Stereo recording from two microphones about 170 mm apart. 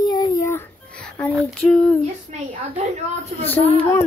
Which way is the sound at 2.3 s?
40° right (ahead or behind).